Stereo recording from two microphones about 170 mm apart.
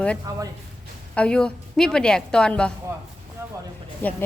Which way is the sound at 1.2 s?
5° left (ahead or behind).